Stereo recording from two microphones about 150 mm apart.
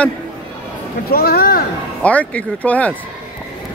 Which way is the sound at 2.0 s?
10° left (ahead or behind).